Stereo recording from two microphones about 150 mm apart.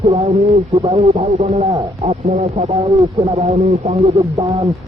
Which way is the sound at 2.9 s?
20° right (ahead or behind).